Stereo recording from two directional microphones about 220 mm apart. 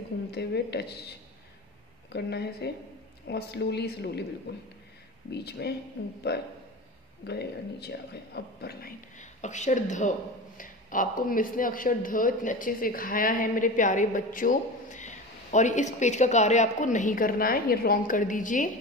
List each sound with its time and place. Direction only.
0.3 s speech: 50° left (ahead or behind)
2.1 s speech: 50° left (ahead or behind)
7.2 s a man's voice: 50° left (ahead or behind)